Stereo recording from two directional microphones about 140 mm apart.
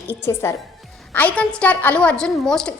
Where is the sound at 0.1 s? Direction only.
15° left (ahead or behind).